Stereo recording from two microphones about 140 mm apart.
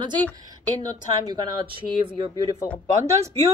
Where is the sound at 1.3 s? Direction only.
35° right (ahead or behind).